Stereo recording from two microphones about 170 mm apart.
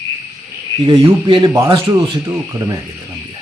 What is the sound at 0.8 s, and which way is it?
Speech, 30° right (ahead or behind).